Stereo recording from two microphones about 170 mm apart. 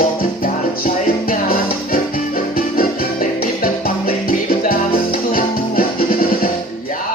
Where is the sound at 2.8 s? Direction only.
55° left (ahead or behind).